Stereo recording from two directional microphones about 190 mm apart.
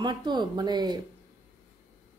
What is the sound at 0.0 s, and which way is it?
A woman's voice, 25° right (ahead or behind).